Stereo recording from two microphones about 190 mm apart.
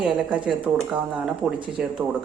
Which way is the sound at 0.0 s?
5° right (ahead or behind).